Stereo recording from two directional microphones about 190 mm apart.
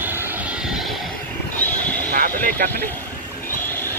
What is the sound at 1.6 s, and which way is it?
Neigh, 10° left (ahead or behind).